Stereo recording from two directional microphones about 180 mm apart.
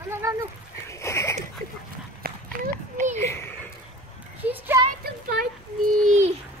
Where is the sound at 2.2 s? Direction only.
50° right (ahead or behind).